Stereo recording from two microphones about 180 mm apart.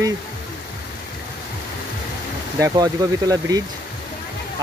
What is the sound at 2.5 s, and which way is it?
Speech, 20° right (ahead or behind).